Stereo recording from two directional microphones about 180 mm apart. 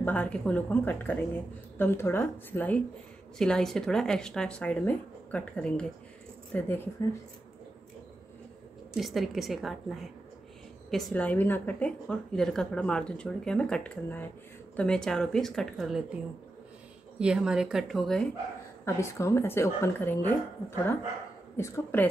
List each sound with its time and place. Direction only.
0.0 s a woman's voice: 10° left (ahead or behind)
8.9 s a woman's voice: centre (ahead or behind)
17.2 s a woman's voice: 5° right (ahead or behind)
18.9 s a woman's voice: 15° left (ahead or behind)